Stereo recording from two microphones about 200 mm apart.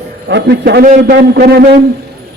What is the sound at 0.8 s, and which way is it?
Speech, 40° right (ahead or behind).